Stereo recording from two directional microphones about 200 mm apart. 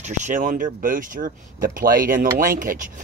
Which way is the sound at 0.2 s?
40° right (ahead or behind).